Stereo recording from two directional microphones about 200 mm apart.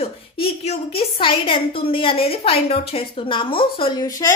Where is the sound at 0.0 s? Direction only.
30° left (ahead or behind).